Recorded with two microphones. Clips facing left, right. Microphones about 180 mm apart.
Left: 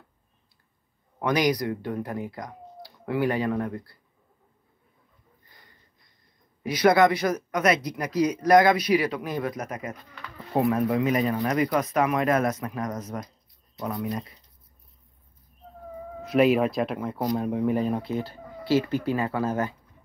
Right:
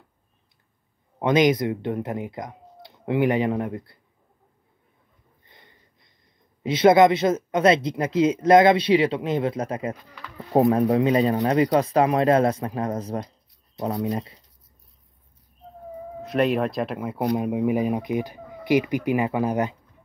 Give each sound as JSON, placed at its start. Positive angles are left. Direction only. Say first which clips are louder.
{"t": 1.2, "sound": "speech", "louder": "right 5 dB", "side_deg": -25}
{"t": 5.5, "sound": "a sound", "louder": "right 4 dB", "side_deg": -25}
{"t": 6.6, "sound": "speech", "louder": "right 4 dB", "side_deg": -25}
{"t": 16.2, "sound": "speech", "louder": "left 2 dB", "side_deg": 0}